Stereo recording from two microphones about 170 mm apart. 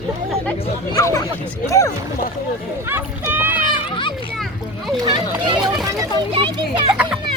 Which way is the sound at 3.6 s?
30° left (ahead or behind).